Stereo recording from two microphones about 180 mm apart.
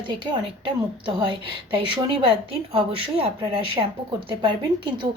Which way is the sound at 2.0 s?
30° right (ahead or behind).